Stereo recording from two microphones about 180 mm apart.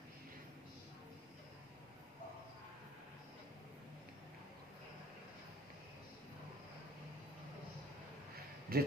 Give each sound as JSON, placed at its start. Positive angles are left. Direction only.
{"t": 8.7, "sound": "speech", "side_deg": -55}